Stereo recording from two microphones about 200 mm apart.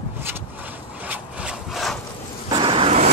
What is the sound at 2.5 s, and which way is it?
Vehicle, 25° right (ahead or behind).